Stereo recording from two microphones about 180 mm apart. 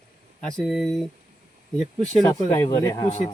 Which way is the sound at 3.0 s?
40° left (ahead or behind).